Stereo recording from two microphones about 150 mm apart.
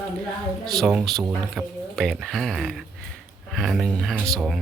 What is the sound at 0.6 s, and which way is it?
Speech, centre (ahead or behind).